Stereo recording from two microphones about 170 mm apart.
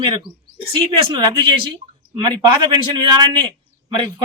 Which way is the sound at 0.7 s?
30° right (ahead or behind).